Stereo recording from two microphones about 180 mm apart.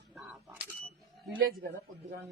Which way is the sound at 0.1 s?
Centre (ahead or behind).